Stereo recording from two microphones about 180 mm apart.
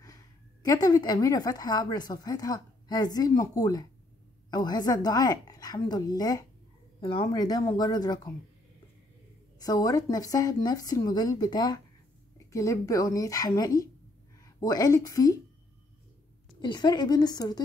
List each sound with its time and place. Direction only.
0.0 s a woman's voice: 20° left (ahead or behind)
9.6 s speech: 20° left (ahead or behind)
16.6 s speech: 25° left (ahead or behind)